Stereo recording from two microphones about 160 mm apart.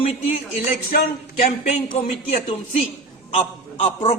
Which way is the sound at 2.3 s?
45° left (ahead or behind).